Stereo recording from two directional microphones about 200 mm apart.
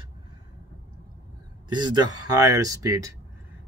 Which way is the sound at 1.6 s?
20° right (ahead or behind).